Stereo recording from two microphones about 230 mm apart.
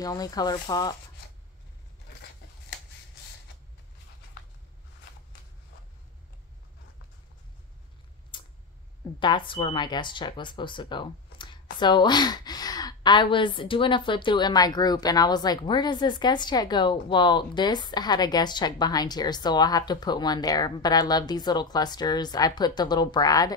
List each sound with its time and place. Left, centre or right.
0.0 s a woman's voice: centre
8.3 s tick-tock: left
9.2 s a woman's voice: left